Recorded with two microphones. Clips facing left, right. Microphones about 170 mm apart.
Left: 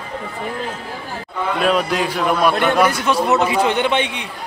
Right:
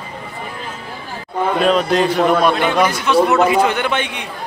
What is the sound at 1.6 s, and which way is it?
Speech, 5° left (ahead or behind).